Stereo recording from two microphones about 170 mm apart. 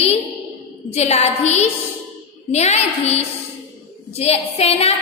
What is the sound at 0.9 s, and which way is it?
A woman's voice, 40° left (ahead or behind).